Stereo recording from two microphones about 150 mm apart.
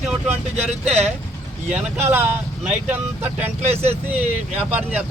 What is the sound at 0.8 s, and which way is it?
Speech, 45° right (ahead or behind).